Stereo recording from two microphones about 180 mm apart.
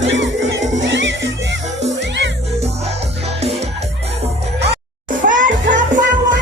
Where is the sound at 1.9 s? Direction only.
80° right.